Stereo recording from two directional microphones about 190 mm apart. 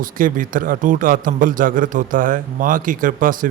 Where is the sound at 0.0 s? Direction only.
45° right (ahead or behind).